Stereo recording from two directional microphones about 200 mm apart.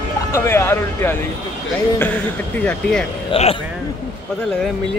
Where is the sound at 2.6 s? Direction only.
5° left (ahead or behind).